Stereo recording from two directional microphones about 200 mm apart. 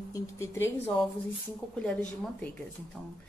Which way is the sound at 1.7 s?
5° left (ahead or behind).